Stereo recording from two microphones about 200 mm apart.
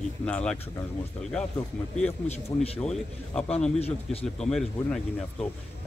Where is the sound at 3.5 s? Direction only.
30° left (ahead or behind).